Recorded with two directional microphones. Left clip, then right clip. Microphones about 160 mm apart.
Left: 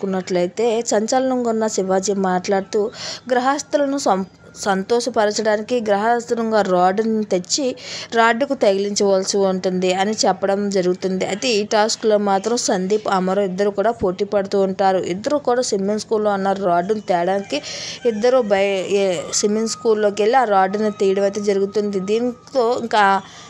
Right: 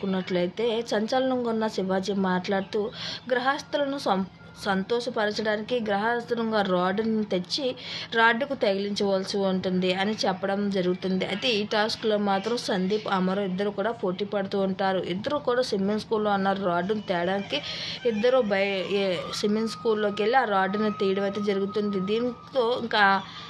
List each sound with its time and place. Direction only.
0.1 s a woman's voice: 40° left (ahead or behind)